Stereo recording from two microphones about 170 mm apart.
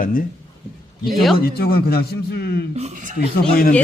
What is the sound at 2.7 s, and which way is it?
Speech, 45° right (ahead or behind).